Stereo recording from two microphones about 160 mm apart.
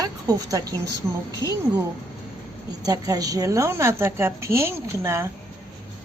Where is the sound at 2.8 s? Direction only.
25° right (ahead or behind).